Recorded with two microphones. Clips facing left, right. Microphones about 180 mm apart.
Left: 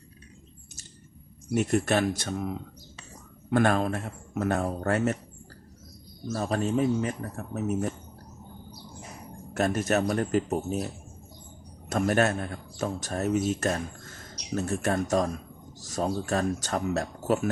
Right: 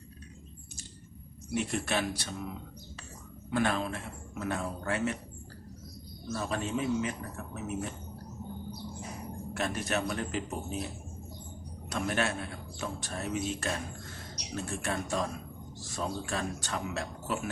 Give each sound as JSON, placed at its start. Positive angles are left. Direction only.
{"t": 1.5, "sound": "speech", "side_deg": 45}
{"t": 6.3, "sound": "speech", "side_deg": 40}
{"t": 9.6, "sound": "speech", "side_deg": 45}
{"t": 11.9, "sound": "speech", "side_deg": 45}